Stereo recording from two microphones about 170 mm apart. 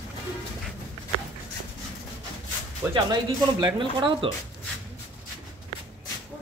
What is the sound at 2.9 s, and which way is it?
Speech, 25° right (ahead or behind).